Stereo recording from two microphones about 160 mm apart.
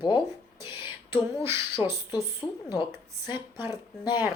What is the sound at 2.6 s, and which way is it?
Speech, 25° left (ahead or behind).